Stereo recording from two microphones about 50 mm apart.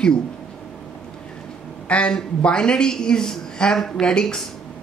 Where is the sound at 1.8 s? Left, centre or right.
Left.